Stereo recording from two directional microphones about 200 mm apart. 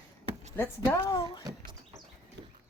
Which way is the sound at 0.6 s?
10° left (ahead or behind).